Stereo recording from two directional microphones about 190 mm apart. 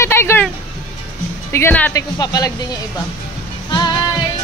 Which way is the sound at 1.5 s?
10° left (ahead or behind).